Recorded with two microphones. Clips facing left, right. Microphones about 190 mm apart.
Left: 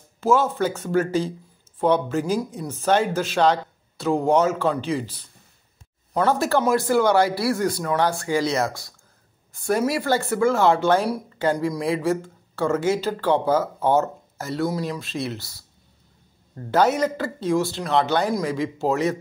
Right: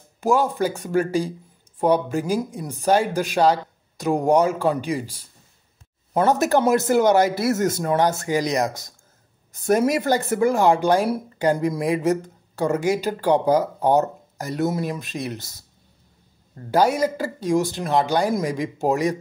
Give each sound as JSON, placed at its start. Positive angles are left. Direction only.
{"t": 0.2, "sound": "speech", "side_deg": -15}
{"t": 16.7, "sound": "speech", "side_deg": -10}